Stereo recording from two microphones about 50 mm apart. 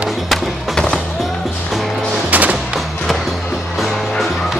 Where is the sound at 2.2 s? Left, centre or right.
Right.